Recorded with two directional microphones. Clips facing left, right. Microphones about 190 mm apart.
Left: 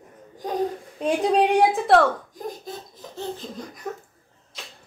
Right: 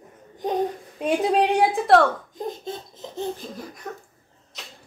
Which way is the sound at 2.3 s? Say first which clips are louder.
Right 3 dB; 25° right (ahead or behind).